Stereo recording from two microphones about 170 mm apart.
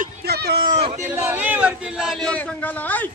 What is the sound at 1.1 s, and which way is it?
Speech, 10° right (ahead or behind).